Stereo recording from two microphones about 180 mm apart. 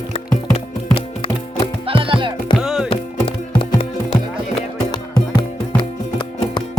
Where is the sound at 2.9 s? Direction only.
30° left (ahead or behind).